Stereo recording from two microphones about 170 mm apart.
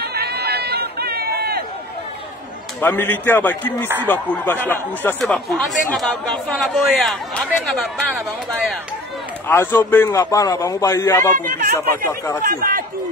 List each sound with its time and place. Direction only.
0.0 s run: 70° right (ahead or behind)
2.8 s a man's voice: 10° left (ahead or behind)
9.5 s a man's voice: 15° left (ahead or behind)
11.3 s speech: 50° right (ahead or behind)